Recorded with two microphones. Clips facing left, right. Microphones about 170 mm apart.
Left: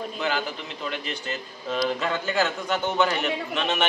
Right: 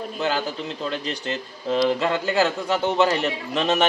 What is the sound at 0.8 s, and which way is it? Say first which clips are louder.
A man's voice: right 3 dB; 35° right (ahead or behind).